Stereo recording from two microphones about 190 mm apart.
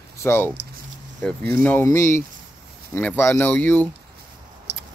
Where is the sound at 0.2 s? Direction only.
15° left (ahead or behind).